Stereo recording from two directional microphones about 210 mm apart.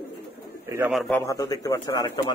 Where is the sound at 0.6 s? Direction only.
15° right (ahead or behind).